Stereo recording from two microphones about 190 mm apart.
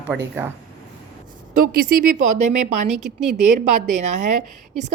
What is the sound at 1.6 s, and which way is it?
Speech, 50° right (ahead or behind).